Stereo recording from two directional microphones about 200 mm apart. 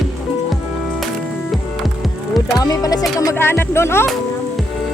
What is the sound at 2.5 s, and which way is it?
Speech, 20° left (ahead or behind).